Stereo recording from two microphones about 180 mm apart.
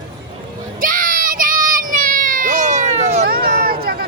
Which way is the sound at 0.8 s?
50° right (ahead or behind).